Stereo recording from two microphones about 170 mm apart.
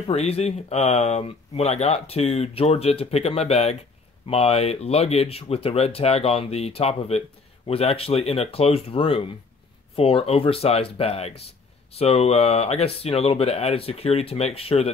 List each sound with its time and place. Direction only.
0.0 s speech: 35° left (ahead or behind)